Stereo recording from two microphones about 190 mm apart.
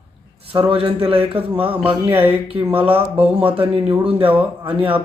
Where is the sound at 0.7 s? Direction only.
30° right (ahead or behind).